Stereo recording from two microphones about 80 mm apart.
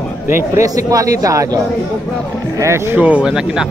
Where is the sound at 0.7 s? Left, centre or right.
Right.